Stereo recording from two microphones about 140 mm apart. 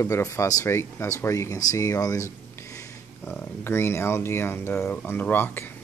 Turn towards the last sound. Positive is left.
turn(degrees=15)  # may be behind; listen again after turning